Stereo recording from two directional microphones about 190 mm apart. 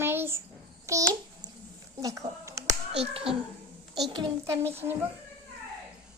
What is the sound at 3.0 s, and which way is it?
Speech, 30° right (ahead or behind).